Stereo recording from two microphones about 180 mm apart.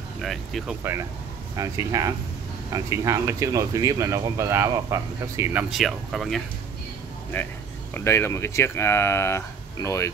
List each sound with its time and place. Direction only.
0.2 s speech: centre (ahead or behind)
1.6 s speech: 20° right (ahead or behind); by 6.4 s centre (ahead or behind)
7.9 s speech: 15° left (ahead or behind)